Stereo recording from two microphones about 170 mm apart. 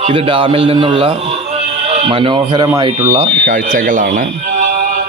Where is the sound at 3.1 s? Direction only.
45° right (ahead or behind).